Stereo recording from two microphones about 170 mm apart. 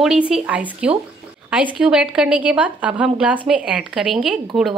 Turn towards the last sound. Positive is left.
turn(degrees=0)  # may be behind; listen again after turning